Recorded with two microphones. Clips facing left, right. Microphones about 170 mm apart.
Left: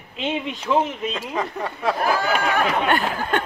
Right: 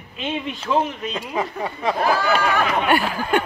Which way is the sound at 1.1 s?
10° right (ahead or behind).